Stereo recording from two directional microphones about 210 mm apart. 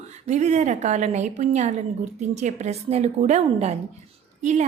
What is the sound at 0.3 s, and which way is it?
A woman's voice, 35° right (ahead or behind).